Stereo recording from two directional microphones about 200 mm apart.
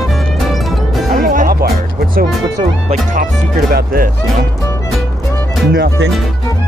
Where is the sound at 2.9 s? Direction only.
40° right (ahead or behind).